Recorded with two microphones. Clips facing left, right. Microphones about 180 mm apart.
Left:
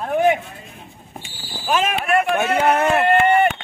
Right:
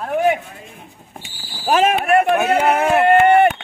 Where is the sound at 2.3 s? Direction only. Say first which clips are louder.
Right 1 dB; 5° right (ahead or behind).